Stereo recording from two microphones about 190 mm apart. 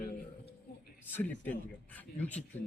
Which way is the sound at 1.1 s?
10° left (ahead or behind).